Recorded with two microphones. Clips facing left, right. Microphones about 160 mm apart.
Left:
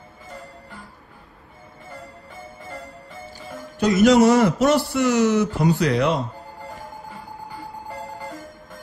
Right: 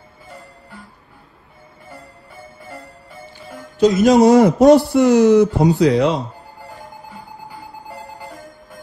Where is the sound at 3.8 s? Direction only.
65° left (ahead or behind).